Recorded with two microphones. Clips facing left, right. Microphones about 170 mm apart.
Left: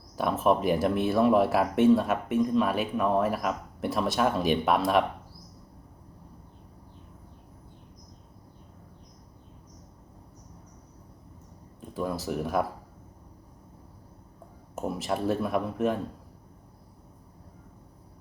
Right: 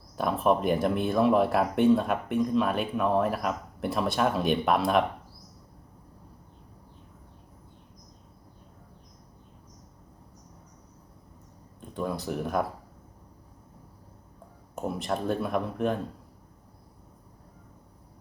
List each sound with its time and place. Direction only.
0.2 s speech: centre (ahead or behind)
11.8 s a sound: centre (ahead or behind)
14.8 s speech: 5° left (ahead or behind)